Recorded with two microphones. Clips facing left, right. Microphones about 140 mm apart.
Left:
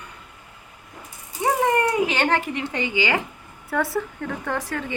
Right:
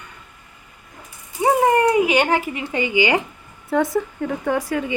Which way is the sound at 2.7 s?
10° right (ahead or behind).